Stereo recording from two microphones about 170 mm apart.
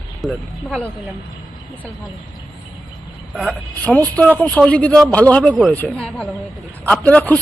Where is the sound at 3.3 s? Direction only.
Centre (ahead or behind).